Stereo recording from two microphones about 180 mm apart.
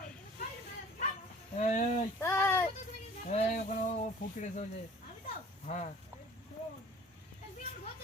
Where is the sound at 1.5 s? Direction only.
45° left (ahead or behind).